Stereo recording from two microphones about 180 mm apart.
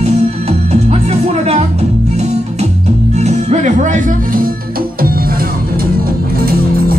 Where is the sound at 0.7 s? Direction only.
35° right (ahead or behind).